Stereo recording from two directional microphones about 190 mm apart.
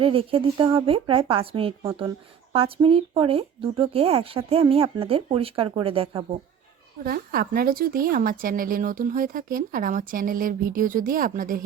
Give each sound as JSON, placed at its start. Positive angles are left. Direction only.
{"t": 0.0, "sound": "speech", "side_deg": -30}
{"t": 7.0, "sound": "speech", "side_deg": -50}